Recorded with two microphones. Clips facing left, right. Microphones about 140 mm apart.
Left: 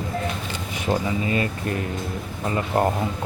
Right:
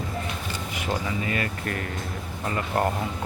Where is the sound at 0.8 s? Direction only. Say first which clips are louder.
Left 5 dB; 25° left (ahead or behind).